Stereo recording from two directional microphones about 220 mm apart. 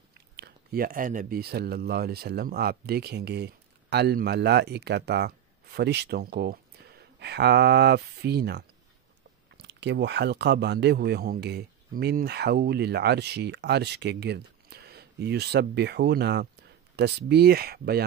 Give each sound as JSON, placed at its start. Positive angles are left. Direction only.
{"t": 0.4, "sound": "speech", "side_deg": -45}